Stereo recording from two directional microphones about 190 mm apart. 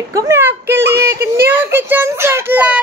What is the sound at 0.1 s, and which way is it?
A child's voice, 15° right (ahead or behind).